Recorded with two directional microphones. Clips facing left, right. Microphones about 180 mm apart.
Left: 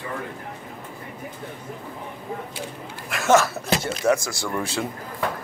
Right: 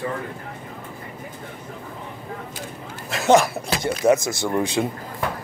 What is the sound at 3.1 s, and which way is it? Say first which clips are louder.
Speech: right 2 dB; 15° right (ahead or behind).